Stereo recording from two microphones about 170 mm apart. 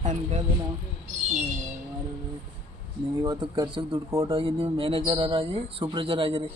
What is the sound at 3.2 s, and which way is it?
A man's voice, 25° right (ahead or behind).